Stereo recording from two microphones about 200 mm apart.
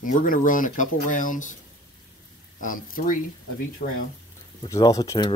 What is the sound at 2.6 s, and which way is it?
Speech, 45° left (ahead or behind).